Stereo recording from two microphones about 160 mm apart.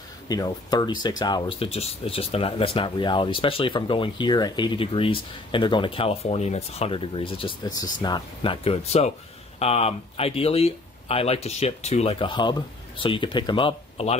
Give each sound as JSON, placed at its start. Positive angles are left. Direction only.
{"t": 0.3, "sound": "speech", "side_deg": 25}